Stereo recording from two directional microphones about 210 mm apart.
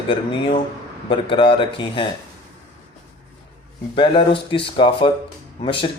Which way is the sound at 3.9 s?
25° left (ahead or behind).